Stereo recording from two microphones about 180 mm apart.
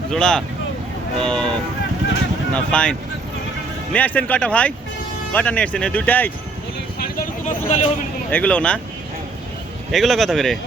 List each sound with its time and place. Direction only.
0.1 s speech: 5° left (ahead or behind)
2.7 s speech: 5° left (ahead or behind)
3.9 s speech: 10° left (ahead or behind)
7.4 s speech: 40° left (ahead or behind)
8.3 s speech: 5° left (ahead or behind)
9.9 s speech: centre (ahead or behind)